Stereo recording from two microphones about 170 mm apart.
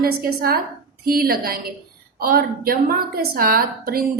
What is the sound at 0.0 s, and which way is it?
A woman's voice, 65° right (ahead or behind).